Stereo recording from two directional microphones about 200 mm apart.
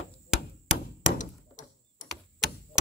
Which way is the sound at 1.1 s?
40° left (ahead or behind).